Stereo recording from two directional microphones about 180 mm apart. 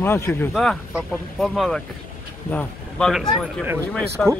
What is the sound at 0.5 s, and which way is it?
Speech, centre (ahead or behind).